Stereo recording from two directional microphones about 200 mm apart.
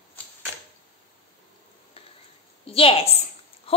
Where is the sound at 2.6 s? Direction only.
30° left (ahead or behind).